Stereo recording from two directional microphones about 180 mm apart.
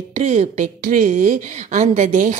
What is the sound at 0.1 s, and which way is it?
A woman's voice, 40° right (ahead or behind).